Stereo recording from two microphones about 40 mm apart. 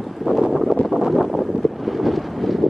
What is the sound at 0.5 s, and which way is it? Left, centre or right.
Wind noise, centre.